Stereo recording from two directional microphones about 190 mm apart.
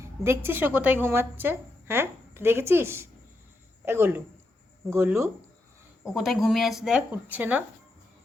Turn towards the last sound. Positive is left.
turn(degrees=-10)  # may be behind; listen again after turning